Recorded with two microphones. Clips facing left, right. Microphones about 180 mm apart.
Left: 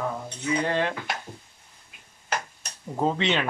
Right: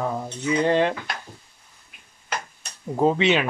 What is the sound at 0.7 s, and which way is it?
Dishes, 20° right (ahead or behind).